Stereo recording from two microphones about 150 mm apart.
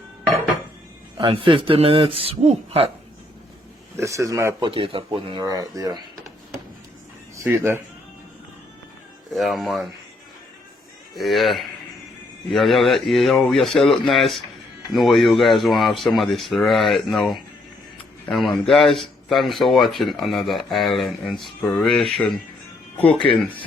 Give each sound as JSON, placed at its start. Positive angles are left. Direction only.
{"t": 1.2, "sound": "a man's voice", "side_deg": -35}
{"t": 3.9, "sound": "speech", "side_deg": -20}
{"t": 4.6, "sound": "a man's voice", "side_deg": -35}
{"t": 7.3, "sound": "speech", "side_deg": -15}
{"t": 9.3, "sound": "speech", "side_deg": 0}
{"t": 11.1, "sound": "speech", "side_deg": 0}